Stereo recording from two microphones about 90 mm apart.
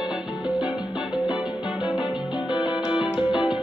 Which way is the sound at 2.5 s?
60° left (ahead or behind).